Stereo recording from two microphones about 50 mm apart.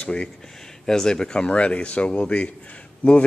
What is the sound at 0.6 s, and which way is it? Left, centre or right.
Speech, centre.